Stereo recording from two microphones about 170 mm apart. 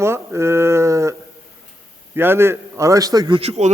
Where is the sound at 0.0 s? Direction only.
15° right (ahead or behind).